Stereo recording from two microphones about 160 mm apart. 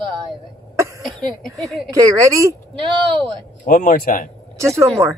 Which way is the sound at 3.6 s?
55° left (ahead or behind).